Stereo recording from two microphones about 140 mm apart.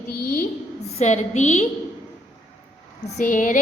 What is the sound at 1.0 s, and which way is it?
Speech, 55° left (ahead or behind).